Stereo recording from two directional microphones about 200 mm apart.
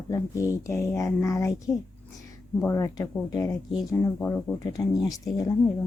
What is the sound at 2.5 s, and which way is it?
Speech, 15° left (ahead or behind).